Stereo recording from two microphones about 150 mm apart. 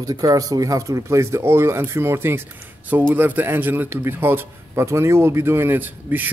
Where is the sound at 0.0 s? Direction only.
25° right (ahead or behind).